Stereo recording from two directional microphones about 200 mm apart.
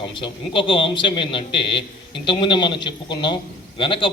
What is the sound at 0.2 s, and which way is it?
A man's voice, 25° left (ahead or behind).